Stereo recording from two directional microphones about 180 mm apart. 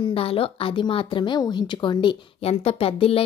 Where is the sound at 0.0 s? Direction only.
30° left (ahead or behind).